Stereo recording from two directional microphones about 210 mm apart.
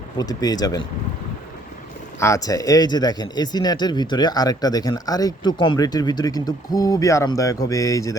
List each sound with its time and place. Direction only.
0.2 s speech: 20° left (ahead or behind)
2.1 s speech: 15° left (ahead or behind)